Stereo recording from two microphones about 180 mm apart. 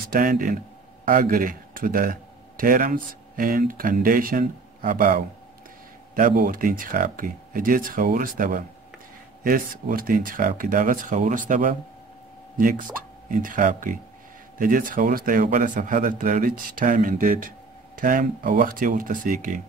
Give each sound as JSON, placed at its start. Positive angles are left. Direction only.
{"t": 0.1, "sound": "a man's voice", "side_deg": -50}